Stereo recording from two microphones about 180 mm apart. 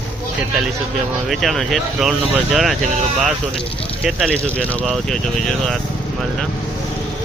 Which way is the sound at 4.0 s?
Centre (ahead or behind).